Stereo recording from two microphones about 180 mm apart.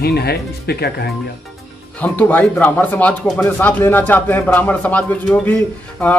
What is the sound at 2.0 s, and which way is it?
Speech, 10° left (ahead or behind).